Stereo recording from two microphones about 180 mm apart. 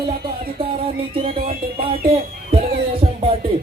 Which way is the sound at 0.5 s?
30° right (ahead or behind).